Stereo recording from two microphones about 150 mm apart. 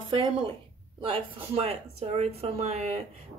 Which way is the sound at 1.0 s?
40° right (ahead or behind).